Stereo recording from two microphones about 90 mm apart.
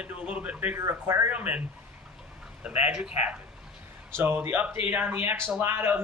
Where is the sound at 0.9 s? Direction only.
35° right (ahead or behind).